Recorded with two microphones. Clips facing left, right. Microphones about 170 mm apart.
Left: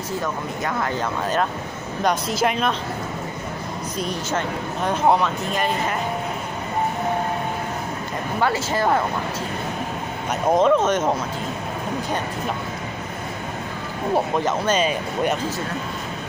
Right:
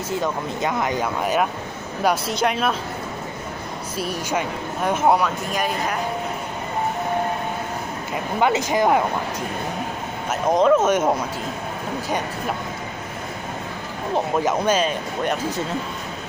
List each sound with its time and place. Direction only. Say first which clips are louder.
0.2 s speech: right 2 dB; 20° right (ahead or behind)
2.0 s speech: even; centre (ahead or behind)
4.0 s speech: right 1 dB; 10° right (ahead or behind)
8.4 s speech: right 3 dB; 15° right (ahead or behind)
10.5 s speech: right 1 dB; centre (ahead or behind)
14.4 s speech: right 1 dB; 10° right (ahead or behind)
14.8 s speech: left 1 dB; 5° left (ahead or behind)